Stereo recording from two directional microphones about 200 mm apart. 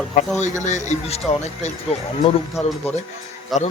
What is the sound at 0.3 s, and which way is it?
Speech, 35° left (ahead or behind).